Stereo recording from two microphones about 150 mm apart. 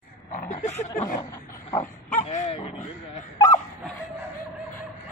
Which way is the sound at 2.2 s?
50° left (ahead or behind).